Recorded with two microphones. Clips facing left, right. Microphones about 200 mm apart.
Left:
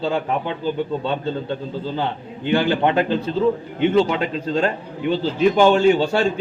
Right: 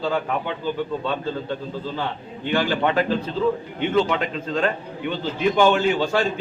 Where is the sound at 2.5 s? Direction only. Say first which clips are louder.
Left 3 dB; 25° left (ahead or behind).